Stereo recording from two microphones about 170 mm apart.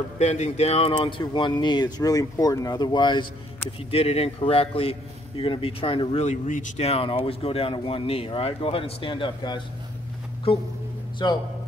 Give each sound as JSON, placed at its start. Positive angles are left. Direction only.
{"t": 0.2, "sound": "speech", "side_deg": 40}
{"t": 11.2, "sound": "a man's voice", "side_deg": 25}